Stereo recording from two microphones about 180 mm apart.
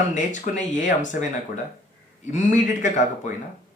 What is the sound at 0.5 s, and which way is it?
Speech, 45° left (ahead or behind).